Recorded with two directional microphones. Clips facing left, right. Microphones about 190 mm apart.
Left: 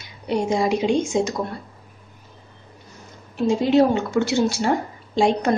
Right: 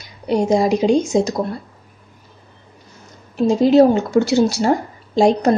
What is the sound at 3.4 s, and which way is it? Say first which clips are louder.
A woman's voice: right 5 dB; 40° right (ahead or behind).